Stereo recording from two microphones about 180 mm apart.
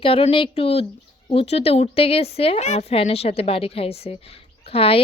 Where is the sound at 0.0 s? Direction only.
30° left (ahead or behind).